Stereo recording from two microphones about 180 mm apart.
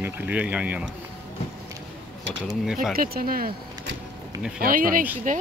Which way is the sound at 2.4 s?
Centre (ahead or behind).